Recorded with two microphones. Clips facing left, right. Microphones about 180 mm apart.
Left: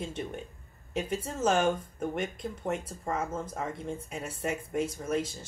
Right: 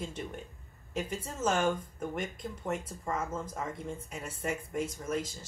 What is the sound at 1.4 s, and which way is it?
Speech, 20° left (ahead or behind).